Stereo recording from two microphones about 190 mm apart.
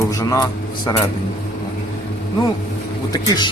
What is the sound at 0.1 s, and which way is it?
Speech, 15° left (ahead or behind).